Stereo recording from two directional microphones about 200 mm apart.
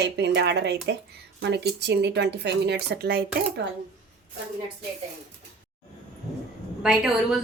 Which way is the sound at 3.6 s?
65° right (ahead or behind).